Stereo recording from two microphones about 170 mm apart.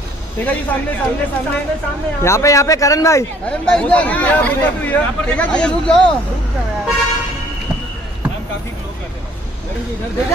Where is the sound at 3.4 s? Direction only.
5° left (ahead or behind).